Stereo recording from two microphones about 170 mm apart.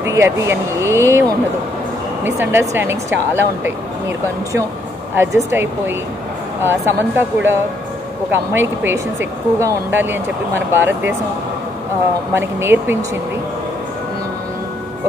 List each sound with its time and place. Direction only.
0.0 s speech: 15° right (ahead or behind)
2.2 s speech: 15° right (ahead or behind)
5.1 s speech: 15° right (ahead or behind)
12.4 s speech: 15° right (ahead or behind)